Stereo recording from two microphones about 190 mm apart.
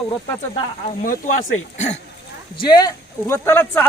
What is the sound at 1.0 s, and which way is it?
Speech, 40° left (ahead or behind).